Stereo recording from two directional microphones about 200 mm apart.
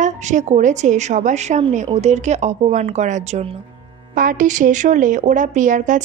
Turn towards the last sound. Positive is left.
turn(degrees=-40)  # may be behind; listen again after turning